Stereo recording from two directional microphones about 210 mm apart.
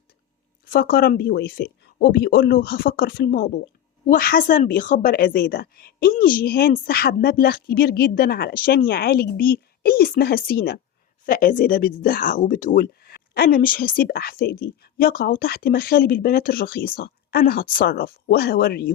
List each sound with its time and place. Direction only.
0.6 s speech: 45° left (ahead or behind)